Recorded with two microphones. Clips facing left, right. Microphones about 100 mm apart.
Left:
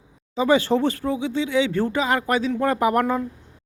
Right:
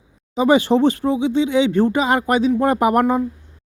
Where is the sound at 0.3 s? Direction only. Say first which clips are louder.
Right 4 dB; 20° right (ahead or behind).